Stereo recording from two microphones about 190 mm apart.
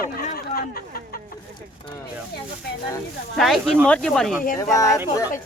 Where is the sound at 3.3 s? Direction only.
Centre (ahead or behind).